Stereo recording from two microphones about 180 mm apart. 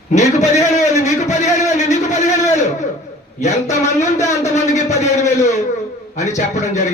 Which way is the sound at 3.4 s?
40° left (ahead or behind).